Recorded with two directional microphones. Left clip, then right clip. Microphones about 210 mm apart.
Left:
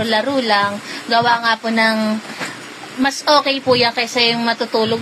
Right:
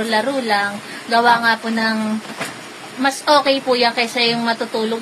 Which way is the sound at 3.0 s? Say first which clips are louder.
Even; 15° left (ahead or behind).